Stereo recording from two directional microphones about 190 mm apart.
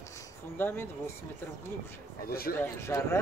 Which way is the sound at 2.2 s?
50° left (ahead or behind).